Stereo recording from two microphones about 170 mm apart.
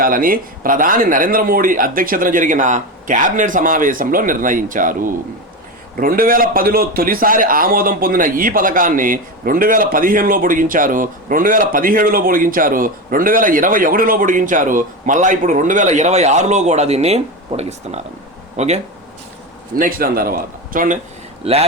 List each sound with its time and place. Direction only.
0.0 s a man's voice: 55° right (ahead or behind); by 18.8 s 40° right (ahead or behind)
19.7 s a man's voice: 60° right (ahead or behind)
21.4 s speech: 35° right (ahead or behind)